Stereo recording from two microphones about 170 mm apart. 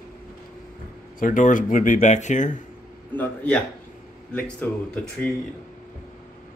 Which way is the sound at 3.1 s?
10° left (ahead or behind).